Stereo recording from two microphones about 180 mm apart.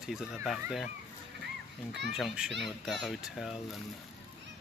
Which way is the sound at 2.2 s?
Centre (ahead or behind).